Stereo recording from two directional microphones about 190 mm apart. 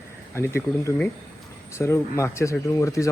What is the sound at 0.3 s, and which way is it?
Speech, 15° left (ahead or behind).